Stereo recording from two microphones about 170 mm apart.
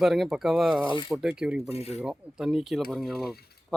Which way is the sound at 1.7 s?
40° left (ahead or behind).